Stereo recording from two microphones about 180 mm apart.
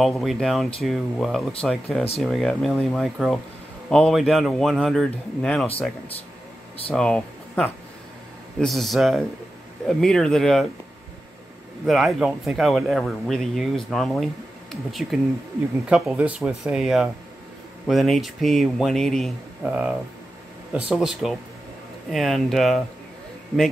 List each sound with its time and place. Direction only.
0.0 s speech: centre (ahead or behind)
6.9 s speech: 5° left (ahead or behind)
11.8 s speech: centre (ahead or behind)